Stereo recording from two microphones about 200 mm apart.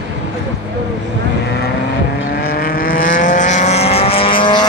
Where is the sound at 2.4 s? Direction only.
45° left (ahead or behind).